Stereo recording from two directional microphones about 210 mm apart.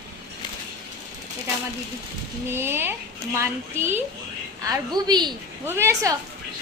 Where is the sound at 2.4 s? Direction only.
10° right (ahead or behind).